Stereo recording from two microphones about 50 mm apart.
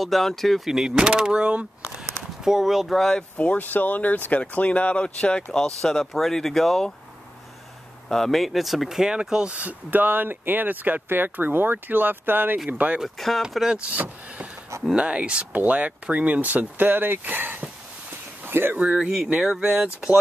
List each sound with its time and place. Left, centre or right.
0.0 s speech: centre
0.7 s speech: centre
2.4 s speech: centre
3.0 s speech: centre
3.3 s speech: left; by 6.9 s centre
8.1 s speech: centre; by 9.8 s right
9.8 s speech: right
12.7 s speech: right
13.5 s speech: centre
13.9 s speech: right
15.0 s speech: right
18.9 s speech: centre
19.7 s speech: right